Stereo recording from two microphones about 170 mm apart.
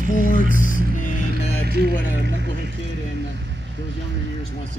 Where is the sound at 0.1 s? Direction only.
50° left (ahead or behind).